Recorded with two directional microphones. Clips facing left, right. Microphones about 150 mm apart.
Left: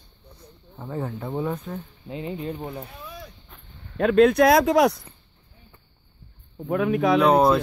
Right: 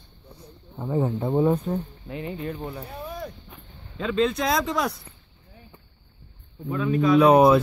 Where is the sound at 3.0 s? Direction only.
50° right (ahead or behind).